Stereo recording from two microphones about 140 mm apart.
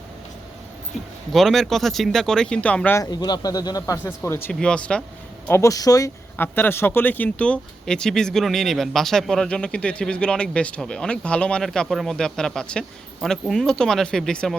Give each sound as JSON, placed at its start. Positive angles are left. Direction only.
{"t": 1.3, "sound": "speech", "side_deg": 0}
{"t": 3.0, "sound": "speech", "side_deg": 30}
{"t": 5.5, "sound": "speech", "side_deg": 20}
{"t": 6.3, "sound": "speech", "side_deg": 15}